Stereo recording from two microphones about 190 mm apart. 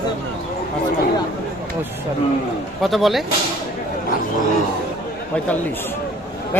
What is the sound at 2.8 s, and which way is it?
Speech, centre (ahead or behind).